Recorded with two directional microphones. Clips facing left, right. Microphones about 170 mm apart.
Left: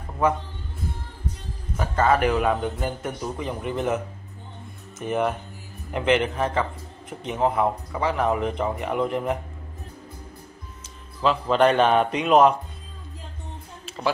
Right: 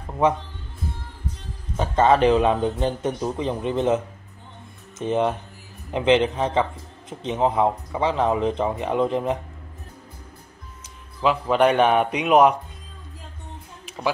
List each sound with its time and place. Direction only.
1.8 s a man's voice: 25° right (ahead or behind)
11.2 s a man's voice: 10° right (ahead or behind)
13.8 s music: 10° right (ahead or behind)